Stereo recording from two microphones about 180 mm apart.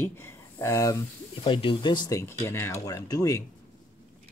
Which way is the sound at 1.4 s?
25° left (ahead or behind).